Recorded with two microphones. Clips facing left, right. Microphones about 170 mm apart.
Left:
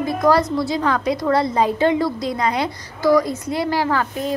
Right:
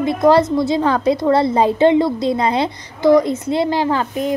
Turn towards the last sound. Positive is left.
turn(degrees=-20)  # may be behind; listen again after turning